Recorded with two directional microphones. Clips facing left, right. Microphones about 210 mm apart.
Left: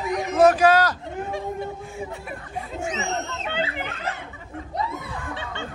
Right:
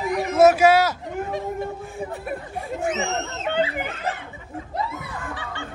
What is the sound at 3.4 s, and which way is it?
Speech, 45° right (ahead or behind).